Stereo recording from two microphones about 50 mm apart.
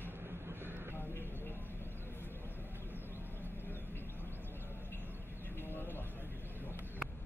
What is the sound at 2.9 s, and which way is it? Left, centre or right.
Vehicle, left.